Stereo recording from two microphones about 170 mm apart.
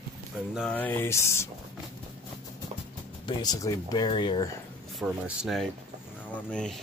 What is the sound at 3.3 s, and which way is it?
Speech, 25° left (ahead or behind).